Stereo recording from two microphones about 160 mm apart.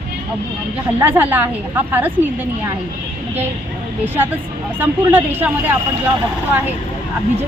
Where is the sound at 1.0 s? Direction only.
10° right (ahead or behind).